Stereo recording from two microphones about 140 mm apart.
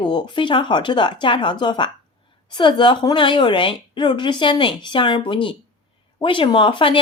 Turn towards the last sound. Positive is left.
turn(degrees=35)  # may be behind; listen again after turning